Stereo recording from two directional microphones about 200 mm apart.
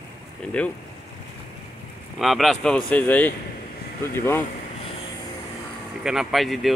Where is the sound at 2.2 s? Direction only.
Centre (ahead or behind).